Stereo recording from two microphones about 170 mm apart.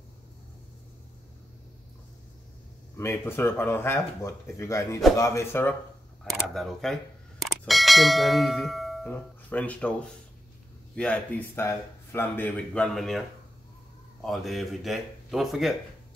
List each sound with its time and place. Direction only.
3.0 s speech: 15° left (ahead or behind)
6.2 s a sound: centre (ahead or behind)
9.1 s speech: 10° left (ahead or behind)
11.0 s speech: 10° left (ahead or behind)
14.2 s speech: centre (ahead or behind)